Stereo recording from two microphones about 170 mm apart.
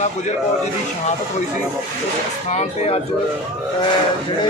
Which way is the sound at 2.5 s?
40° left (ahead or behind).